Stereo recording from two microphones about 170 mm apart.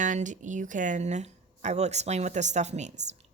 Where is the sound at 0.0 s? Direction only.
45° right (ahead or behind).